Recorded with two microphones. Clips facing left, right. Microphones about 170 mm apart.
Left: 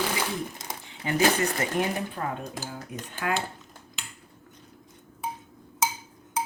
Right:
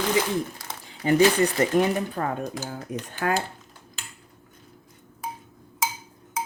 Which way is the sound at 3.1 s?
40° right (ahead or behind).